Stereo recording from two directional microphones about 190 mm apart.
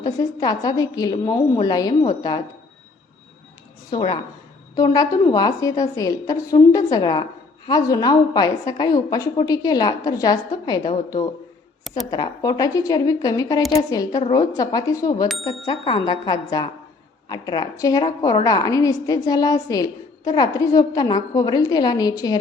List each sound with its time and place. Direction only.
0.0 s a woman's voice: 20° left (ahead or behind)
3.9 s a woman's voice: 25° left (ahead or behind)